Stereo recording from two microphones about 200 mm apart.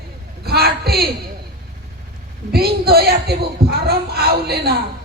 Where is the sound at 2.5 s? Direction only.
50° right (ahead or behind).